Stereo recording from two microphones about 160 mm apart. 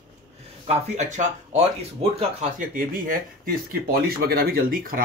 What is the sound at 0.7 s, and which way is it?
Speech, 50° right (ahead or behind).